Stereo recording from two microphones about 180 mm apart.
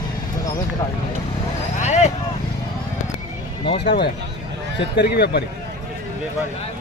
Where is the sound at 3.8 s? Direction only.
65° left (ahead or behind).